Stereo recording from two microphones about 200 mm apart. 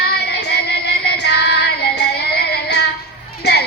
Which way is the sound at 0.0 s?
55° left (ahead or behind).